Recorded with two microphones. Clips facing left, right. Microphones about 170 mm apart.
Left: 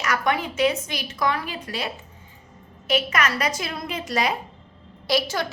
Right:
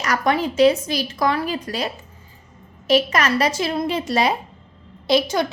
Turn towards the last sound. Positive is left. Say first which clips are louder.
# right 5 dB
turn(degrees=-20)  # may be behind; listen again after turning